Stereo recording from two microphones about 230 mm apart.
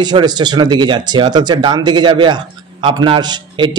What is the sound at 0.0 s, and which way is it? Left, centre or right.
Speech, centre.